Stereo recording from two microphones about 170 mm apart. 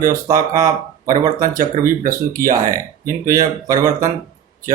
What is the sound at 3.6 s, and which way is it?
Speech, 20° right (ahead or behind).